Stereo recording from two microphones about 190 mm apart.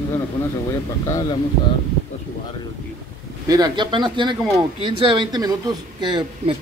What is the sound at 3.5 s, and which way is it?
Speech, 20° right (ahead or behind).